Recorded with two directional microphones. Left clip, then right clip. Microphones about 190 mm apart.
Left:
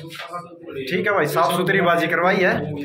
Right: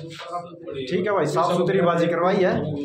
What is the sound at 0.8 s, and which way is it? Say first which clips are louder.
Speech: left 3 dB; 10° right (ahead or behind).